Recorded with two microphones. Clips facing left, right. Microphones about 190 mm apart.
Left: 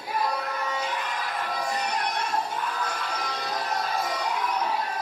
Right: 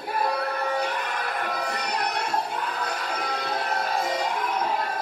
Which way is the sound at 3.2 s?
55° right (ahead or behind).